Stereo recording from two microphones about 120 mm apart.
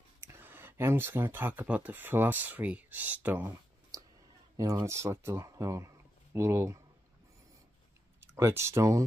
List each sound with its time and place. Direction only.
0.2 s speech: 20° right (ahead or behind)
4.6 s speech: 30° right (ahead or behind)
8.4 s speech: 25° right (ahead or behind)